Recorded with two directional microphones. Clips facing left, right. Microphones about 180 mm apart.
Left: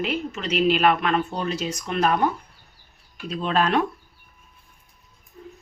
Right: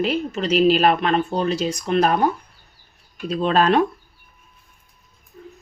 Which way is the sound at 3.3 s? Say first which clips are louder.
Right 5 dB; 35° right (ahead or behind).